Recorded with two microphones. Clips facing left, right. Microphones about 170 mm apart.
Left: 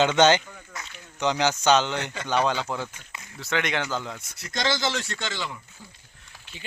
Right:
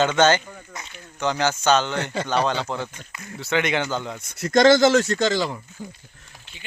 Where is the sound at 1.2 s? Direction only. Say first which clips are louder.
Right 1 dB; 15° left (ahead or behind).